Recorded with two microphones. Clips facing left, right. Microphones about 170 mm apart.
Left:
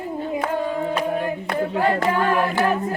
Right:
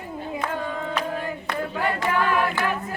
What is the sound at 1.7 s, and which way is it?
A capella, 35° left (ahead or behind).